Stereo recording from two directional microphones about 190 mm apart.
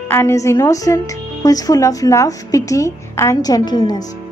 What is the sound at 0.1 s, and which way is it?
A woman's voice, 15° left (ahead or behind).